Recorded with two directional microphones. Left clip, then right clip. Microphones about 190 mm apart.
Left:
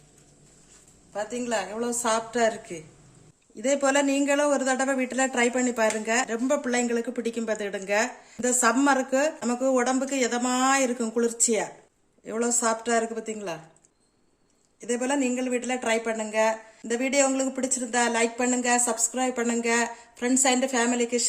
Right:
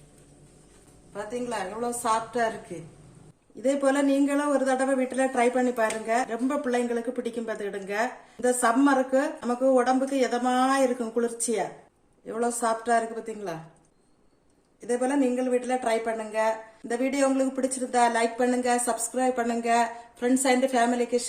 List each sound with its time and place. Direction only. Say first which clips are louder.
1.1 s a woman's voice: left 3 dB; 50° left (ahead or behind)
14.8 s a woman's voice: right 1 dB; 50° left (ahead or behind)